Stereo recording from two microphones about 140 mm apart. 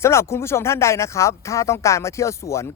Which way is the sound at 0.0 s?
20° left (ahead or behind).